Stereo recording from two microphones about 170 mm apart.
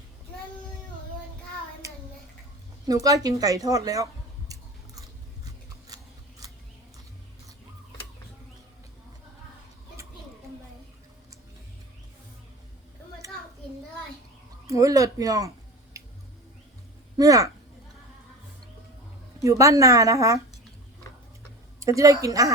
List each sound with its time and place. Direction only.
2.8 s speech: 20° right (ahead or behind)
5.9 s scissors: 20° right (ahead or behind)
14.7 s a sound: 20° right (ahead or behind)
17.2 s a woman's voice: 20° right (ahead or behind)
19.4 s a woman's voice: 20° right (ahead or behind)
21.8 s a woman's voice: 20° right (ahead or behind)